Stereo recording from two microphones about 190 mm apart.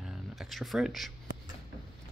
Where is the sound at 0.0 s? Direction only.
Centre (ahead or behind).